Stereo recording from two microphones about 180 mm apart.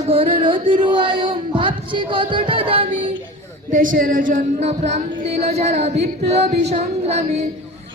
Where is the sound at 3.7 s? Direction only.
45° right (ahead or behind).